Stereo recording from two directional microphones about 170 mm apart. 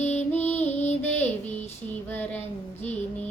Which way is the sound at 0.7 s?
40° left (ahead or behind).